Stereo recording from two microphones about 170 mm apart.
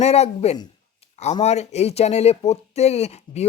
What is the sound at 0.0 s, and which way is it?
Speech, 40° left (ahead or behind).